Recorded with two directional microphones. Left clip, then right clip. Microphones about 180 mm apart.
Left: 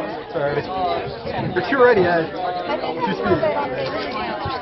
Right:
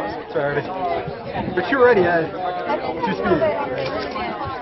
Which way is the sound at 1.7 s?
60° right (ahead or behind).